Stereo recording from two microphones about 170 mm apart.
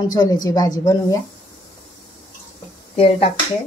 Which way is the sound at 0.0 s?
20° left (ahead or behind).